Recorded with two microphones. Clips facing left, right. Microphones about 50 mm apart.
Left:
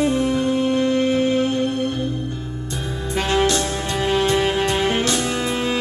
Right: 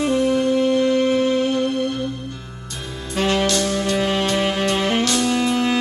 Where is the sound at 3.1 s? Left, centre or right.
Left.